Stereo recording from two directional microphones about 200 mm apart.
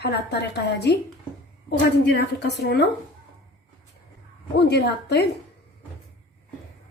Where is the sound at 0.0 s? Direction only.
55° left (ahead or behind).